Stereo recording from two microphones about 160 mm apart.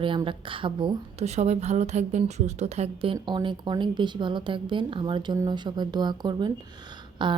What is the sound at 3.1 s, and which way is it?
Speech, 30° right (ahead or behind).